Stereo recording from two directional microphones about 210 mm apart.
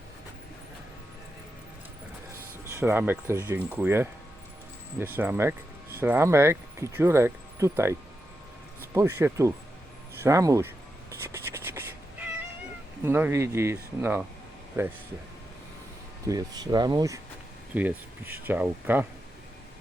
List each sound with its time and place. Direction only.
2.6 s speech: 10° right (ahead or behind)
9.0 s speech: 10° right (ahead or behind)
11.2 s cat: 10° right (ahead or behind)
13.1 s speech: 10° right (ahead or behind)
16.2 s speech: 15° right (ahead or behind)